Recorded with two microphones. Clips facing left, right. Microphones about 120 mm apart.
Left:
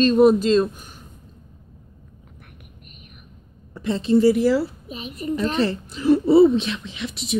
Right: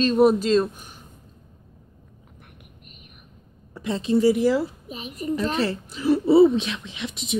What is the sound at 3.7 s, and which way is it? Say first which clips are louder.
A woman's voice: left 3 dB; 10° right (ahead or behind).